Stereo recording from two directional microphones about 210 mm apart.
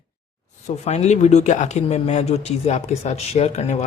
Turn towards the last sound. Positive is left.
turn(degrees=30)  # may be behind; listen again after turning